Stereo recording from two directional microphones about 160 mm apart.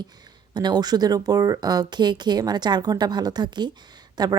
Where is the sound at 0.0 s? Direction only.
25° right (ahead or behind).